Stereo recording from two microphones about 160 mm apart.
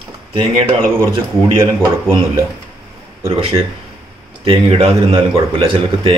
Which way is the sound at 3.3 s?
35° right (ahead or behind).